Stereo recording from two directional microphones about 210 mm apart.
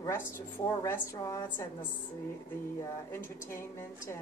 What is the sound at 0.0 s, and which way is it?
A woman's voice, 10° left (ahead or behind).